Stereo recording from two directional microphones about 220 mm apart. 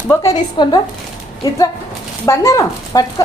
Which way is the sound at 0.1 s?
15° left (ahead or behind).